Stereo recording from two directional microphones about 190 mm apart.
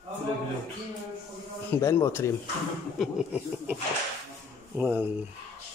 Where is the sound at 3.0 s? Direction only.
5° right (ahead or behind).